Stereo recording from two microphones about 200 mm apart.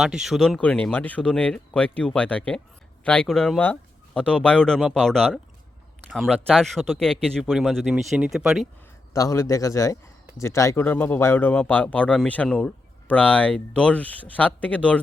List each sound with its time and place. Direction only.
0.0 s speech: centre (ahead or behind)
9.1 s speech: 15° left (ahead or behind)